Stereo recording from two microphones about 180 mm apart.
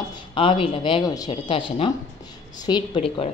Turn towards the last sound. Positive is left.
turn(degrees=30)  # may be behind; listen again after turning